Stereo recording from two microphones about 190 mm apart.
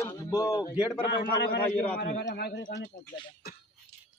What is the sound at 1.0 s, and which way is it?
A man's voice, 60° left (ahead or behind).